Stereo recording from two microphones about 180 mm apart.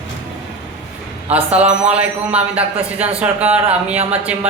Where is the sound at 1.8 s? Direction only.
5° right (ahead or behind).